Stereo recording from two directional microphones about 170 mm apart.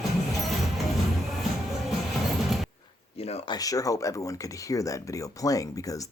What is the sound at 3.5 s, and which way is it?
Speech, 20° left (ahead or behind).